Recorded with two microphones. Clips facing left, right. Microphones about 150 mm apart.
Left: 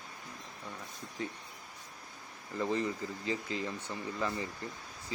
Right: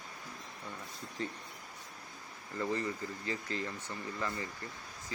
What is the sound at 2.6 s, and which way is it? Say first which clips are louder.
Speech: left 2 dB; 20° left (ahead or behind).